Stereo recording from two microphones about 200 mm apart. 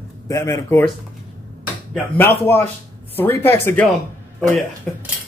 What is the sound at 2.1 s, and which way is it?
Speech, 10° left (ahead or behind).